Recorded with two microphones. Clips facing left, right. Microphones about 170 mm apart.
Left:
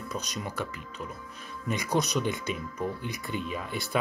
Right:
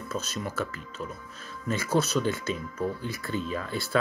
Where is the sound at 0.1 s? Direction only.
15° left (ahead or behind).